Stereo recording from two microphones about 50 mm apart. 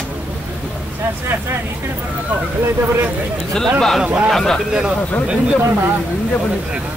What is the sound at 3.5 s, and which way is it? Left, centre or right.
Speech, centre.